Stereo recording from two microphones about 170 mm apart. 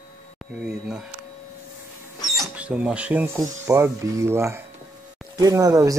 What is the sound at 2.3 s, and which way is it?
Speech, 5° right (ahead or behind).